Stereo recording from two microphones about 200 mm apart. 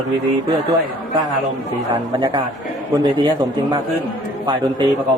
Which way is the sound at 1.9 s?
25° right (ahead or behind).